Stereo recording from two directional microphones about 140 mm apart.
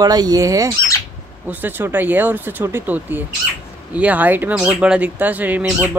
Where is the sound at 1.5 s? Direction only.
15° right (ahead or behind).